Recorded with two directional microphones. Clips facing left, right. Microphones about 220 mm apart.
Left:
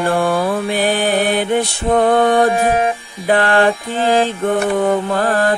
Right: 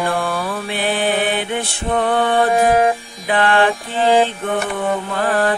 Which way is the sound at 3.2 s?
40° left (ahead or behind).